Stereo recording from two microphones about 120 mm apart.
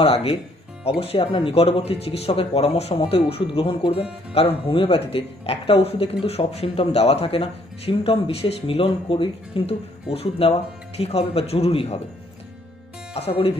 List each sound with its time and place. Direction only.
0.0 s speech: 55° left (ahead or behind)
10.1 s speech: 55° left (ahead or behind)
13.1 s speech: 55° left (ahead or behind)